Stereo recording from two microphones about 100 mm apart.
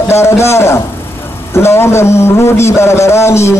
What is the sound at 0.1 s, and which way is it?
A man's voice, 25° left (ahead or behind).